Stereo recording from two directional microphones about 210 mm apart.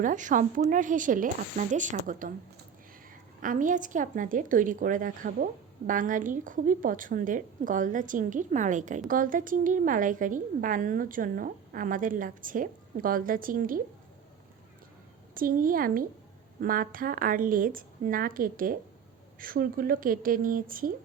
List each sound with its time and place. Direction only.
0.0 s a woman's voice: 40° right (ahead or behind)
3.4 s a woman's voice: 40° right (ahead or behind)
15.4 s a woman's voice: 40° right (ahead or behind)